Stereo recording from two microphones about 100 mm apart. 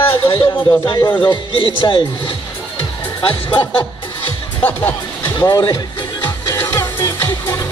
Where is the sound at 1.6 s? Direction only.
55° left (ahead or behind).